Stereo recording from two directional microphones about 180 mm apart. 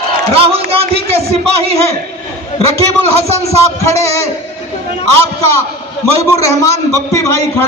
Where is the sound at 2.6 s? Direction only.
35° right (ahead or behind).